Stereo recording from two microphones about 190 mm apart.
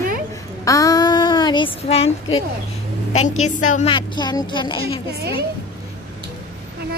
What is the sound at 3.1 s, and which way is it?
Speech, 35° left (ahead or behind).